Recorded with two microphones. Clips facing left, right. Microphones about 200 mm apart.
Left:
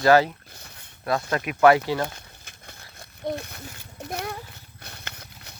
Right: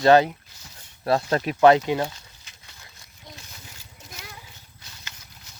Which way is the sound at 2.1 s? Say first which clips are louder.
Left 4 dB; 55° left (ahead or behind).